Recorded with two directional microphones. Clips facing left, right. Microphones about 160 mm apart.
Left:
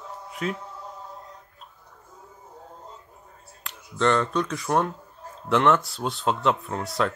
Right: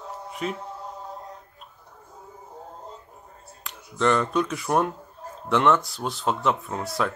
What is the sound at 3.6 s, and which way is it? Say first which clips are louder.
Speech: even; 5° right (ahead or behind).